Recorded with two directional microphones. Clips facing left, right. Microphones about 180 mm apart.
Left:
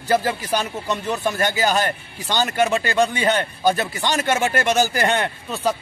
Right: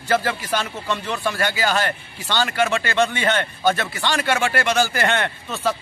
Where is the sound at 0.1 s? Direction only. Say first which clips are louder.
Left 1 dB; 15° left (ahead or behind).